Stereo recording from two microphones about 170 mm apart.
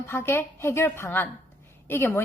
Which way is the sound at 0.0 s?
15° left (ahead or behind).